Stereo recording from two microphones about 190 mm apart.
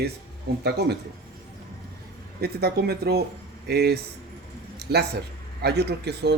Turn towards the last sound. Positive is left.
turn(degrees=-60)  # may be behind; listen again after turning